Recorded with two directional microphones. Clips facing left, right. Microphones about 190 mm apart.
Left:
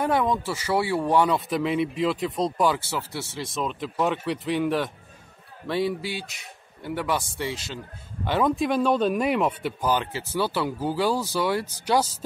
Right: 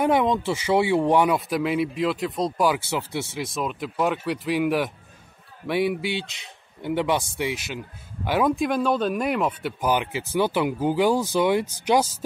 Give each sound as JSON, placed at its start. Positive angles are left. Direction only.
{"t": 0.0, "sound": "speech", "side_deg": -20}
{"t": 2.8, "sound": "speech", "side_deg": -20}
{"t": 3.5, "sound": "a man's voice", "side_deg": -5}
{"t": 9.8, "sound": "speech", "side_deg": -15}